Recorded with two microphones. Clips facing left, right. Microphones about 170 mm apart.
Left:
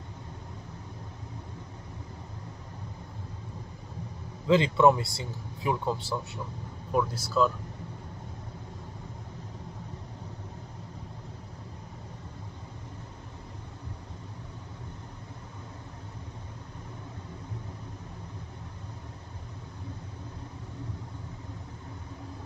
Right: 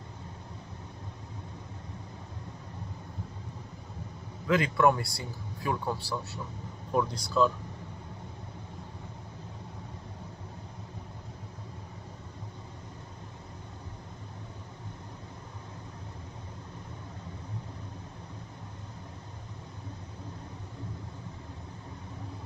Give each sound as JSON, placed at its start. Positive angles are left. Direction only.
{"t": 4.5, "sound": "speech", "side_deg": 25}
{"t": 6.9, "sound": "speech", "side_deg": 5}